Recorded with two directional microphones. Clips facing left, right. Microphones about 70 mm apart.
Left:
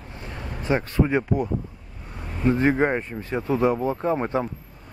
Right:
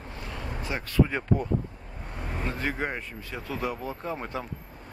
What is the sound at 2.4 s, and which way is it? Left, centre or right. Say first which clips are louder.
Speech: left 12 dB; left.